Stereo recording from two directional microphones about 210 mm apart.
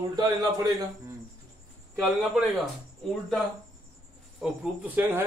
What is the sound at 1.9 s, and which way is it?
Speech, centre (ahead or behind).